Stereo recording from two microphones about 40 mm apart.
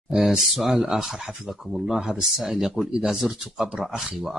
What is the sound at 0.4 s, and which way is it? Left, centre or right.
Speech, centre.